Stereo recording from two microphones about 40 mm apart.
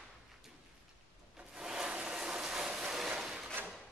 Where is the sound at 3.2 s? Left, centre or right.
Centre.